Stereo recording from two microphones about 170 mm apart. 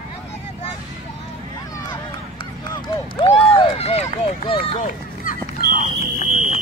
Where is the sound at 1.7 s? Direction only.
25° left (ahead or behind); by 5.4 s 50° left (ahead or behind).